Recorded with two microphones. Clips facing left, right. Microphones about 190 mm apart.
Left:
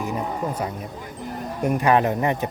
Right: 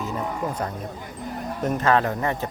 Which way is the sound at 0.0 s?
10° left (ahead or behind).